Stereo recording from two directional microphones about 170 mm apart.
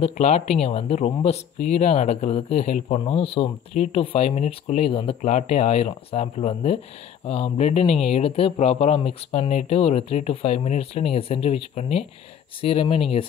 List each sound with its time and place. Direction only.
0.0 s speech: 40° left (ahead or behind)